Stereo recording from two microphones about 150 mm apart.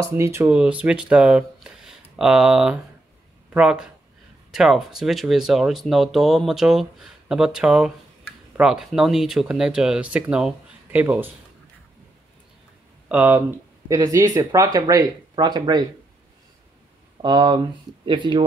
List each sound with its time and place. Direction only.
0.0 s speech: 15° right (ahead or behind)
13.1 s speech: 15° right (ahead or behind)
17.2 s speech: 30° right (ahead or behind)